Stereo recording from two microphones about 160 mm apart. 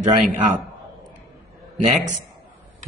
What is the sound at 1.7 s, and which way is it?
Speech, 45° right (ahead or behind).